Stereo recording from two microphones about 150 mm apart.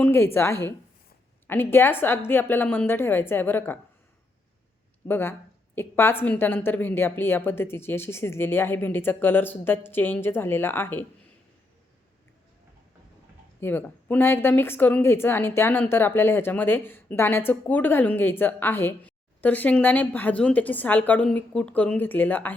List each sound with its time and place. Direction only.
0.0 s a woman's voice: 15° left (ahead or behind)
5.0 s a woman's voice: 15° left (ahead or behind)
13.6 s a woman's voice: 15° left (ahead or behind)